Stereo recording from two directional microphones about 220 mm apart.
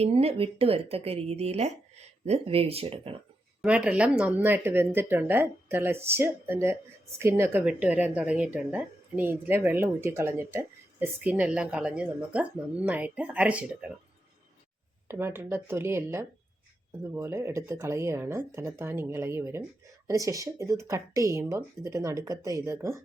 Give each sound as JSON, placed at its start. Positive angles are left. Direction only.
{"t": 0.0, "sound": "speech", "side_deg": -25}
{"t": 3.6, "sound": "a woman's voice", "side_deg": -5}
{"t": 15.0, "sound": "a woman's voice", "side_deg": -10}